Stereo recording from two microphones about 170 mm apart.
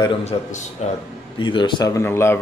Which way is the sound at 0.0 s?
35° left (ahead or behind).